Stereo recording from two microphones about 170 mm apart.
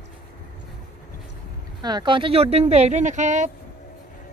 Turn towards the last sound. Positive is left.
turn(degrees=-45)  # may be behind; listen again after turning